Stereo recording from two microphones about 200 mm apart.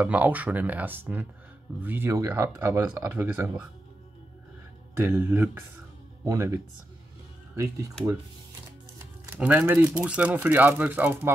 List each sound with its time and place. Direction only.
0.0 s speech: 10° right (ahead or behind)
4.9 s speech: 10° right (ahead or behind)
8.9 s speech: 10° right (ahead or behind)